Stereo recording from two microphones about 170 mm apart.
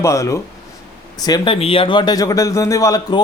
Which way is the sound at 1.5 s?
35° left (ahead or behind).